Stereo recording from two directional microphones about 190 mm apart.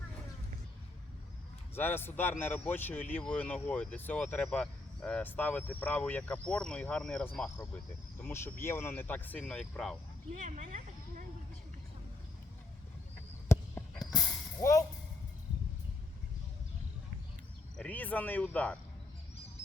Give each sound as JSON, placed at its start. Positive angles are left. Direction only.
{"t": 1.7, "sound": "a man's voice", "side_deg": 10}
{"t": 10.4, "sound": "a sound", "side_deg": -40}
{"t": 14.1, "sound": "vehicle", "side_deg": 0}
{"t": 14.6, "sound": "speech", "side_deg": 15}
{"t": 17.7, "sound": "speech", "side_deg": 10}